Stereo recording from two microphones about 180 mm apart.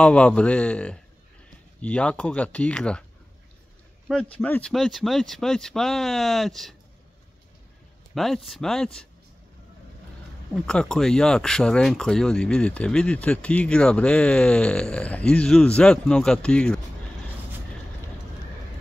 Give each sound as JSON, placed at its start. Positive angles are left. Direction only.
{"t": 0.0, "sound": "speech", "side_deg": 5}
{"t": 4.1, "sound": "speech", "side_deg": 5}
{"t": 8.1, "sound": "speech", "side_deg": 0}
{"t": 10.5, "sound": "speech", "side_deg": 5}